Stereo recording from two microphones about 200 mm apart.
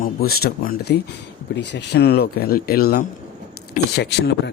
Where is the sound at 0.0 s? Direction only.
50° left (ahead or behind).